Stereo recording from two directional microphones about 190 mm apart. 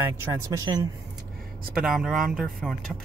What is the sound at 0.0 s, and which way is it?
Speech, 20° right (ahead or behind).